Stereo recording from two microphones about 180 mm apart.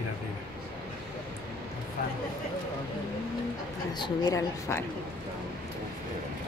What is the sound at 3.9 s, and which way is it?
Speech, 20° left (ahead or behind).